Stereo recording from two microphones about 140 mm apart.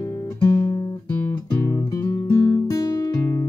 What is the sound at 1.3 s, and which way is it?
Guitar, 25° left (ahead or behind).